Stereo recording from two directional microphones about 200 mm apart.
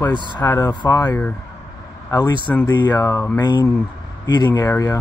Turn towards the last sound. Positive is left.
turn(degrees=15)  # may be behind; listen again after turning